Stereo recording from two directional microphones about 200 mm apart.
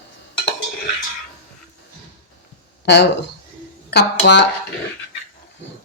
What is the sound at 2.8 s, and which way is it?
Speech, 55° left (ahead or behind).